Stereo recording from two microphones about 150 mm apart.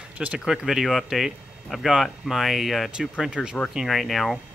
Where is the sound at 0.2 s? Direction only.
5° right (ahead or behind).